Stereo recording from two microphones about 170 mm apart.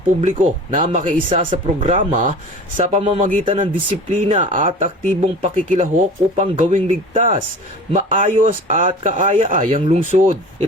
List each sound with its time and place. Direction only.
0.2 s speech: 45° right (ahead or behind)